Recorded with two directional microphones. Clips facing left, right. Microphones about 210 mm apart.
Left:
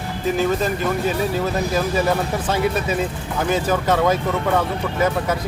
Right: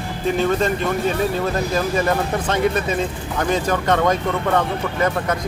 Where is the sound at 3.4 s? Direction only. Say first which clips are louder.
Even; 5° left (ahead or behind).